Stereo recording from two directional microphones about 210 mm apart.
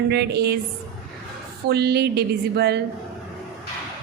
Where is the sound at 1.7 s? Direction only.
50° right (ahead or behind).